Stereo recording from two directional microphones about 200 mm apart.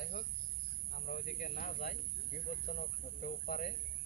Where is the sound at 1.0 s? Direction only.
40° left (ahead or behind).